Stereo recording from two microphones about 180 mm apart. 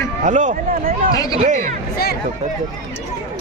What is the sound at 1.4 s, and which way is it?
Speech, 45° right (ahead or behind).